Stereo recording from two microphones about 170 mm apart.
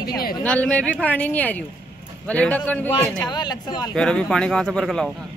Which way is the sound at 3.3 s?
25° left (ahead or behind).